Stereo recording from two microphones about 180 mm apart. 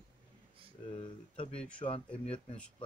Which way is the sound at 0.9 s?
30° left (ahead or behind).